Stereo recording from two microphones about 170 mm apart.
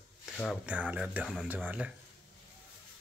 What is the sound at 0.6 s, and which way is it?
Speech, 10° right (ahead or behind).